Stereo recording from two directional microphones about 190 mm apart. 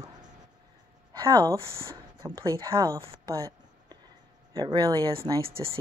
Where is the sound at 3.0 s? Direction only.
20° right (ahead or behind).